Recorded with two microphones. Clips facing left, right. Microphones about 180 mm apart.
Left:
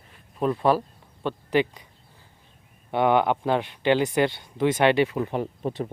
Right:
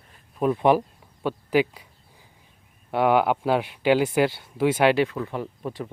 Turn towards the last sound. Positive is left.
turn(degrees=25)  # may be behind; listen again after turning